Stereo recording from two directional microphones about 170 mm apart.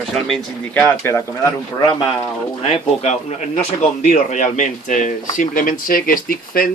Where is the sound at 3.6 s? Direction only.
40° left (ahead or behind); by 6.6 s 55° left (ahead or behind).